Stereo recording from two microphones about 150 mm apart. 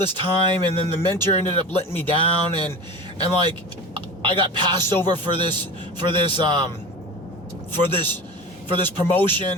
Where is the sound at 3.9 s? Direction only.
35° right (ahead or behind).